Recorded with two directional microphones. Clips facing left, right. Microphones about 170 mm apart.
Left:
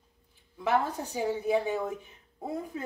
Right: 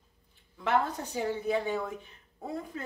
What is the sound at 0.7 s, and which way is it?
Speech, 10° left (ahead or behind).